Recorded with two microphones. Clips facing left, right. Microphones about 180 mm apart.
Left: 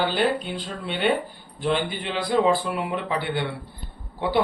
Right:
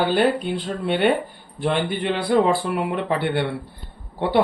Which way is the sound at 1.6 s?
60° right (ahead or behind).